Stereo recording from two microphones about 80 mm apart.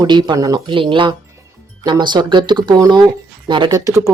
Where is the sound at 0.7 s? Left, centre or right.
Right.